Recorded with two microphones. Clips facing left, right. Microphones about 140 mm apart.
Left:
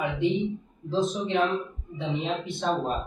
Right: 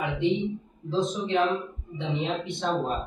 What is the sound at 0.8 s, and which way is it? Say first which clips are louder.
Speech: left 1 dB; centre (ahead or behind).